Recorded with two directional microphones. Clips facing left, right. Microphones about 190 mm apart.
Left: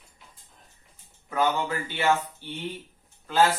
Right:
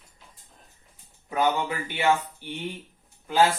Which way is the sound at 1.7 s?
15° right (ahead or behind).